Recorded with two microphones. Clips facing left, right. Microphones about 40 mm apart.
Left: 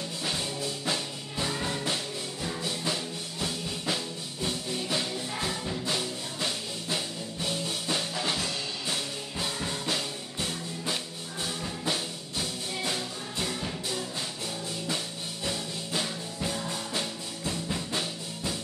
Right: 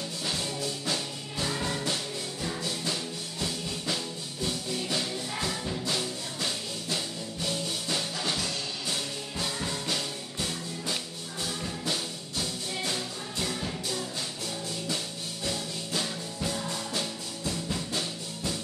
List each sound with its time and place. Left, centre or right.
0.2 s music: centre
1.5 s music: centre
15.4 s music: centre